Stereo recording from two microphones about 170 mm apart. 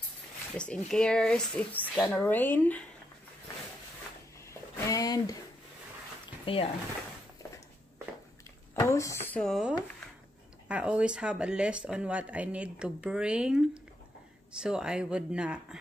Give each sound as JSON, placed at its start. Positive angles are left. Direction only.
{"t": 0.6, "sound": "speech", "side_deg": 5}
{"t": 4.5, "sound": "a sound", "side_deg": 20}
{"t": 8.7, "sound": "speech", "side_deg": 20}
{"t": 9.4, "sound": "speech", "side_deg": 0}